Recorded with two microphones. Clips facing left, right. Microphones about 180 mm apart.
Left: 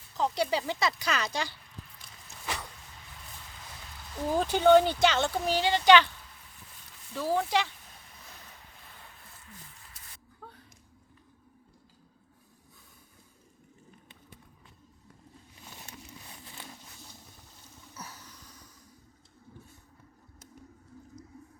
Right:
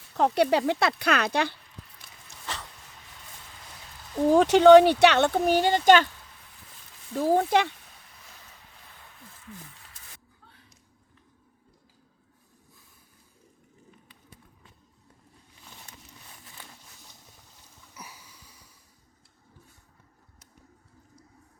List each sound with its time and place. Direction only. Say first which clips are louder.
0.1 s speech: right 7 dB; 65° right (ahead or behind)
4.3 s speech: right 7 dB; 80° right; by 6.1 s 45° right (ahead or behind)
7.1 s speech: right 6 dB; 45° right (ahead or behind)
17.9 s a sound: left 1 dB; 10° right (ahead or behind)